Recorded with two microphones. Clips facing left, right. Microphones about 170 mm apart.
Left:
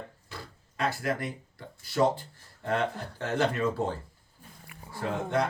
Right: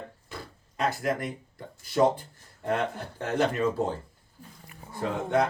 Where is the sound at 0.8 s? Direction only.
20° right (ahead or behind).